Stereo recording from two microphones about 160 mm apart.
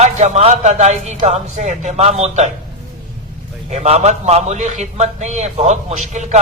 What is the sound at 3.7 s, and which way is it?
A man's voice, 45° right (ahead or behind).